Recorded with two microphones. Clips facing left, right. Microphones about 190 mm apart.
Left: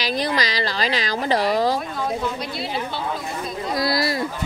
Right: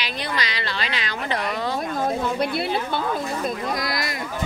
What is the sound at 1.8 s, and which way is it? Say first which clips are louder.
Speech: right 1 dB; 50° right (ahead or behind).